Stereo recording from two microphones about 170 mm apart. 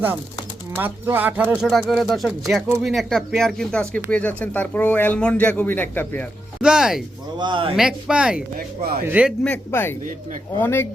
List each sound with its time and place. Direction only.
0.8 s speech: 10° right (ahead or behind)
1.9 s speech: centre (ahead or behind)
6.6 s speech: 5° right (ahead or behind)
7.3 s speech: 25° right (ahead or behind)
7.8 s speech: 5° right (ahead or behind)
8.5 s speech: 60° right (ahead or behind)
9.0 s speech: 10° right (ahead or behind)
9.4 s speech: 10° left (ahead or behind)